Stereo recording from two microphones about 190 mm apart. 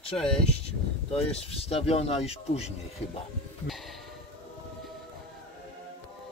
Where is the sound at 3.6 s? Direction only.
Centre (ahead or behind).